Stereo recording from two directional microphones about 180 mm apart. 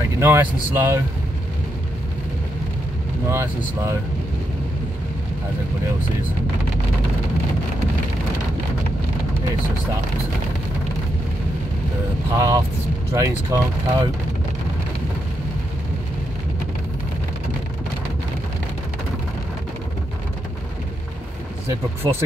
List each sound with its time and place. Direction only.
0.2 s speech: 15° right (ahead or behind)
3.3 s speech: 15° right (ahead or behind)
12.3 s speech: 15° right (ahead or behind)
22.0 s speech: 20° right (ahead or behind)